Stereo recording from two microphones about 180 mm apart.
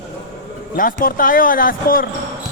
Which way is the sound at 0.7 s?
50° left (ahead or behind).